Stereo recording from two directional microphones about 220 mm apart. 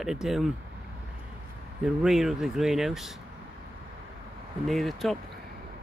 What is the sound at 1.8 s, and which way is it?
Speech, centre (ahead or behind).